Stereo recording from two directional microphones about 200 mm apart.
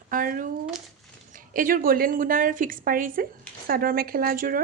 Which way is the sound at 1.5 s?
45° right (ahead or behind).